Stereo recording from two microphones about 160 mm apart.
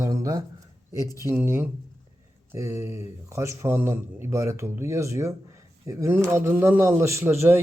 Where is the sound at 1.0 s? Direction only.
20° left (ahead or behind).